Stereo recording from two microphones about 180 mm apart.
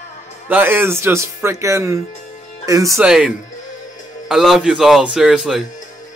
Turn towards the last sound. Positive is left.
turn(degrees=0)  # may be behind; listen again after turning